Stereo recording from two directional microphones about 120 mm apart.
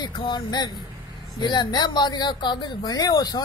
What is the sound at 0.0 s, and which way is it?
Speech, 40° left (ahead or behind).